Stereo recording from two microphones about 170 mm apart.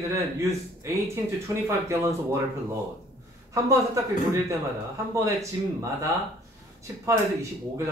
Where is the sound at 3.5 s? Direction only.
20° right (ahead or behind).